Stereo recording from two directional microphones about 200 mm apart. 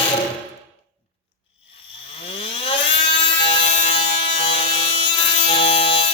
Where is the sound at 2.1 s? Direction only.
30° left (ahead or behind).